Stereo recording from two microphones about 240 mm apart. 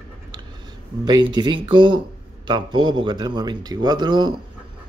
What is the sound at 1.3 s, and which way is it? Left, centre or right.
A man's voice, centre.